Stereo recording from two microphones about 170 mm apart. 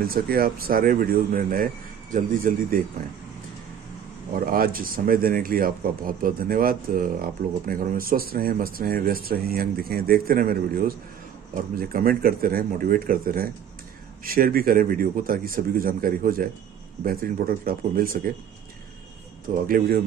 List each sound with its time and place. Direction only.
0.0 s speech: 60° right (ahead or behind)
4.5 s speech: 60° right (ahead or behind)
19.5 s speech: 55° right (ahead or behind)